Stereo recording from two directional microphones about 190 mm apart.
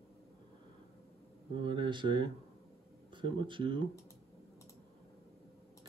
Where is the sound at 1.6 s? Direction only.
25° right (ahead or behind).